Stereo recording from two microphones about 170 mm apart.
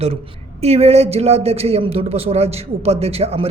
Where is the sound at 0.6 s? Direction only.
40° right (ahead or behind).